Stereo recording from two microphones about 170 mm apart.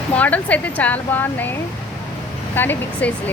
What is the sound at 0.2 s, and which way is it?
Speech, 10° left (ahead or behind).